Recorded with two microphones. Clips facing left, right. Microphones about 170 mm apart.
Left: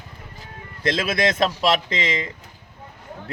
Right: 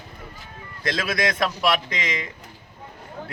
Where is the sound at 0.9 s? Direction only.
25° left (ahead or behind).